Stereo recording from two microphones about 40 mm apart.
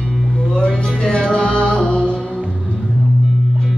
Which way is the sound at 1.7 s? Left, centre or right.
Centre.